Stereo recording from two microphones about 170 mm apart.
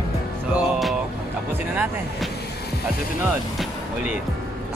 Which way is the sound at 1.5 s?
10° right (ahead or behind).